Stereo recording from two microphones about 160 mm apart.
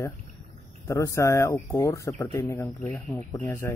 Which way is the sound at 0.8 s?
20° left (ahead or behind).